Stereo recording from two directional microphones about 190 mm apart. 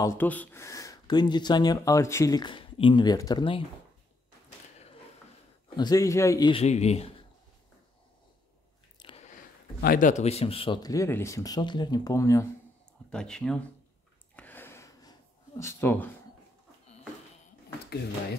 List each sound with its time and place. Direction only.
0.0 s speech: 10° left (ahead or behind)
5.8 s a man's voice: 20° left (ahead or behind)
6.5 s speech: 35° left (ahead or behind)
9.0 s biting: 30° left (ahead or behind)
9.8 s speech: 45° left (ahead or behind); by 12.4 s 15° left (ahead or behind)
13.1 s speech: 5° left (ahead or behind)
14.3 s a sound: 10° left (ahead or behind)